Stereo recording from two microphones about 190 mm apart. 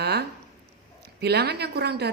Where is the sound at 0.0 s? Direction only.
60° right (ahead or behind).